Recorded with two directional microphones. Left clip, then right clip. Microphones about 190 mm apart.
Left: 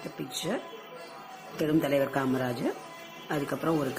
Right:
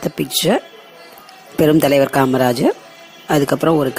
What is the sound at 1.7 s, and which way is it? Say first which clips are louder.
Speech: right 13 dB; 50° right (ahead or behind).